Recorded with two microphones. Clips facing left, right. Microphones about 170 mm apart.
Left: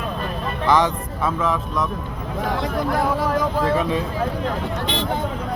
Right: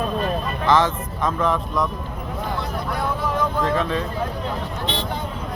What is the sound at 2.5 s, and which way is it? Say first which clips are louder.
Speech: left 6 dB; 90° left.